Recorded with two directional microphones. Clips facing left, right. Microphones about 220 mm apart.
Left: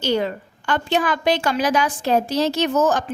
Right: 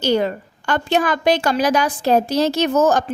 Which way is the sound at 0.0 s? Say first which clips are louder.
Right 3 dB; 45° right (ahead or behind).